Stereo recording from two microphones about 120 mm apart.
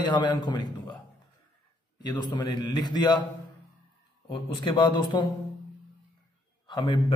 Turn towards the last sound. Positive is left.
turn(degrees=40)  # may be behind; listen again after turning